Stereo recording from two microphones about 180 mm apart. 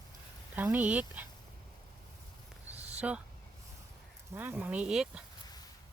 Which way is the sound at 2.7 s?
35° right (ahead or behind).